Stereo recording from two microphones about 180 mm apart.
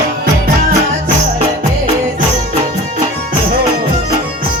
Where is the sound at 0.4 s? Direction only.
55° right (ahead or behind).